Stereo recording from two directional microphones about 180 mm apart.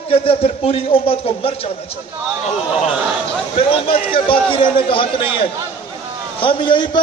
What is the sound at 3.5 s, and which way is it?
A man's voice, 30° left (ahead or behind).